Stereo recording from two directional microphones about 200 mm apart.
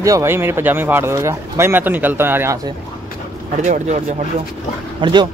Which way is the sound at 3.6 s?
35° right (ahead or behind).